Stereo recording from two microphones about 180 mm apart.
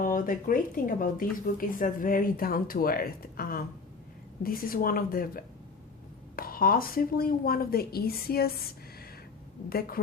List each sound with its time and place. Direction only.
0.0 s speech: 50° left (ahead or behind)
9.6 s speech: 55° left (ahead or behind)